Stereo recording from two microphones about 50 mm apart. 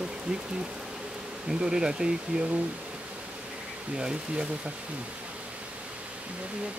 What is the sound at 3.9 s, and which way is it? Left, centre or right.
Speech, centre.